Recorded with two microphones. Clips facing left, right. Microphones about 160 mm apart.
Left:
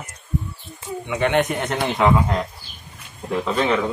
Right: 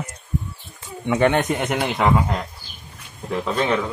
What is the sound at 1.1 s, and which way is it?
Speech, 45° right (ahead or behind).